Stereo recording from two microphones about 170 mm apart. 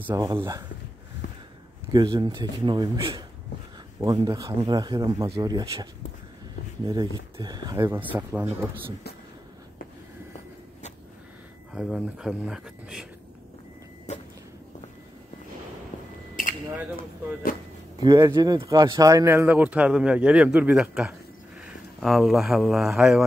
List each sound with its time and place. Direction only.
0.1 s speech: 20° right (ahead or behind)
1.2 s a sound: 65° left (ahead or behind)
1.9 s speech: 25° right (ahead or behind)
6.9 s speech: 25° right (ahead or behind); by 8.6 s 10° right (ahead or behind)
11.7 s speech: 5° right (ahead or behind)
14.1 s vehicle: 40° left (ahead or behind)
16.4 s a sound: 55° left (ahead or behind)
17.9 s speech: 20° right (ahead or behind); by 23.2 s 5° right (ahead or behind)